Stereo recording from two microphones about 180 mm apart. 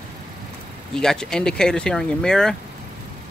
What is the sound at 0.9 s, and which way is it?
Speech, 5° left (ahead or behind).